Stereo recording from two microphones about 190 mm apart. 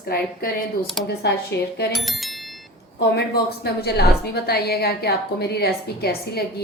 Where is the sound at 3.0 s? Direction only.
55° left (ahead or behind).